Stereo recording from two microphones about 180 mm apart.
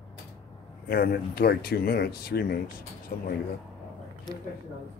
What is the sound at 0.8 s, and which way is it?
Speech, 60° left (ahead or behind).